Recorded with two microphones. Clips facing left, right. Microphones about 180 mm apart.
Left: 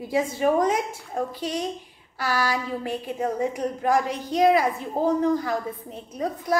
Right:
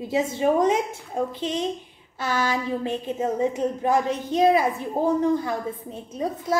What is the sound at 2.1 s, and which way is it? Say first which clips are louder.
A woman's voice: right 1 dB; 20° right (ahead or behind).